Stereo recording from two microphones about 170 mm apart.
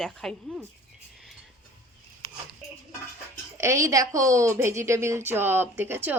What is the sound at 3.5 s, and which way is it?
A woman's voice, 15° right (ahead or behind).